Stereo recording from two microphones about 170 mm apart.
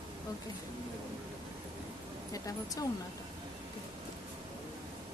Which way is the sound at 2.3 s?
20° left (ahead or behind).